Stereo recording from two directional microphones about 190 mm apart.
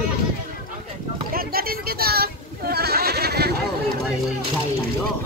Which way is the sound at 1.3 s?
50° right (ahead or behind).